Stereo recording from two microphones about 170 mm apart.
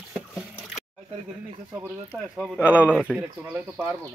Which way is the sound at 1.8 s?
5° right (ahead or behind).